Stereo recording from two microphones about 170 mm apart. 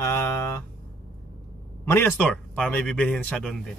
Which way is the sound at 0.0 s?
15° left (ahead or behind).